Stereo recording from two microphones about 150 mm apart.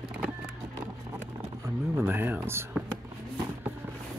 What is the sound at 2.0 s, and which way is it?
Speech, 15° right (ahead or behind).